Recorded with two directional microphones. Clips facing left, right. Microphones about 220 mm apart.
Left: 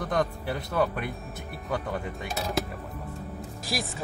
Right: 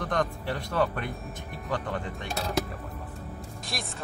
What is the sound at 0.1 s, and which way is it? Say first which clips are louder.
Speech: left 2 dB; 5° left (ahead or behind).